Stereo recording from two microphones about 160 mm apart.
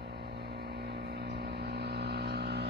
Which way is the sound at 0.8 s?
90° right.